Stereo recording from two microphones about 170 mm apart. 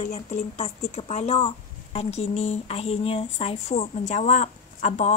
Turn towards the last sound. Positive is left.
turn(degrees=40)  # may be behind; listen again after turning